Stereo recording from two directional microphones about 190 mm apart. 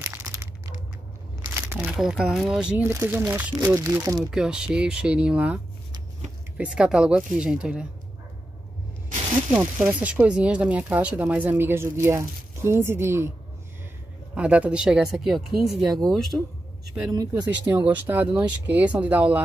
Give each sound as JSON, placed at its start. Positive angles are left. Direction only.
{"t": 0.1, "sound": "crumpling", "side_deg": -15}
{"t": 1.4, "sound": "speech", "side_deg": -15}
{"t": 4.2, "sound": "speech", "side_deg": -5}
{"t": 6.6, "sound": "speech", "side_deg": -5}
{"t": 9.5, "sound": "speech", "side_deg": -10}
{"t": 14.3, "sound": "speech", "side_deg": -5}
{"t": 17.1, "sound": "speech", "side_deg": -15}